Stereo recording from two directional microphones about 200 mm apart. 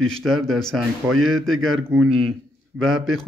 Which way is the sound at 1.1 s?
90° right.